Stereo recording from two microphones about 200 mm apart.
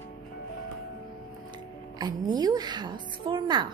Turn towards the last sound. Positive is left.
turn(degrees=-20)  # may be behind; listen again after turning